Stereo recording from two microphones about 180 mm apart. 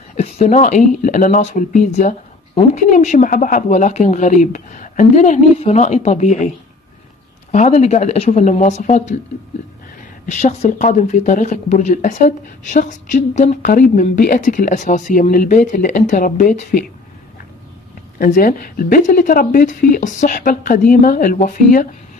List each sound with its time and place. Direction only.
0.1 s speech: 40° left (ahead or behind)
7.5 s speech: 40° left (ahead or behind)
10.2 s speech: 40° left (ahead or behind)
18.2 s speech: 50° left (ahead or behind)